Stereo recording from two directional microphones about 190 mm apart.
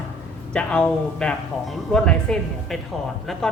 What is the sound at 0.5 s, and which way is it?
Speech, 5° left (ahead or behind).